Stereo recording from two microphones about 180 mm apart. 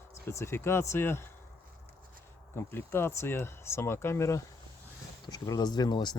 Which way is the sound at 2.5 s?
15° left (ahead or behind).